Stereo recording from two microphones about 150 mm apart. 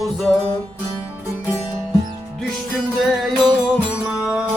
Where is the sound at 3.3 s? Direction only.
30° right (ahead or behind).